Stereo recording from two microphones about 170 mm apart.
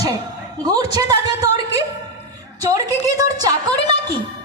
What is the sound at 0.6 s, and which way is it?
Speech, 20° right (ahead or behind).